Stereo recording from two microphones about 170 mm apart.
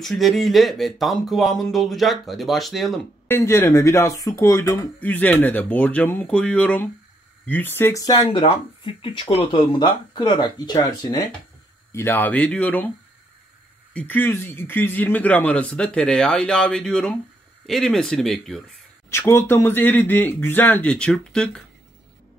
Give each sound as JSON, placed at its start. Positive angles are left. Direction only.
{"t": 0.0, "sound": "speech", "side_deg": 0}
{"t": 3.3, "sound": "speech", "side_deg": 15}
{"t": 11.9, "sound": "speech", "side_deg": 15}
{"t": 13.9, "sound": "speech", "side_deg": 10}
{"t": 19.0, "sound": "speech", "side_deg": 15}